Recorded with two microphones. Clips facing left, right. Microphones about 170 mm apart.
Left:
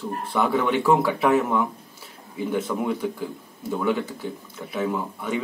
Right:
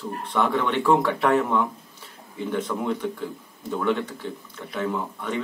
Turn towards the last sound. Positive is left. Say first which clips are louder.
# left 1 dB
turn(degrees=5)  # may be behind; listen again after turning